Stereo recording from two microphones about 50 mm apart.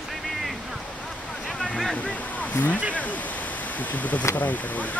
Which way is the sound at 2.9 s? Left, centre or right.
Left.